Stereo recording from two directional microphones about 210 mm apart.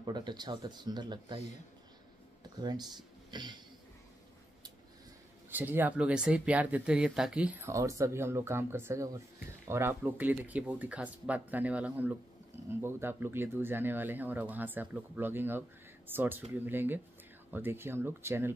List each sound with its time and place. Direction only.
0.0 s speech: 20° right (ahead or behind)
2.4 s speech: 20° right (ahead or behind)
5.5 s speech: 10° right (ahead or behind)